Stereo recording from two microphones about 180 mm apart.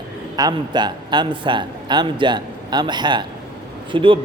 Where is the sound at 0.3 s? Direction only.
20° right (ahead or behind).